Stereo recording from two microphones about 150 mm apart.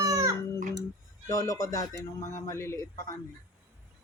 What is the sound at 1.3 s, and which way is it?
Speech, 20° left (ahead or behind).